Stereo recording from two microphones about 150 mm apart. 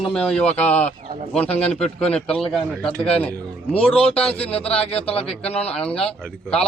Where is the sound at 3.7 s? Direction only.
40° left (ahead or behind).